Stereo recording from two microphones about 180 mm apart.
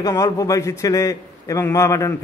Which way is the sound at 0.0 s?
20° left (ahead or behind).